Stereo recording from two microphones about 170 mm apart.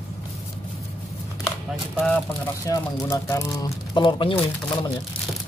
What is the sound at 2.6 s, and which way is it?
Speech, 20° left (ahead or behind).